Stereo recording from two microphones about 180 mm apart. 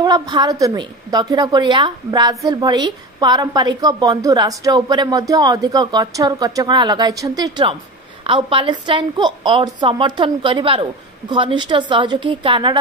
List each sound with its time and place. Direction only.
0.0 s a woman's voice: 25° right (ahead or behind)